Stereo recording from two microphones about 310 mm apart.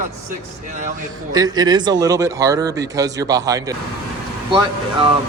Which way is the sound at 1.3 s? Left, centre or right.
Centre.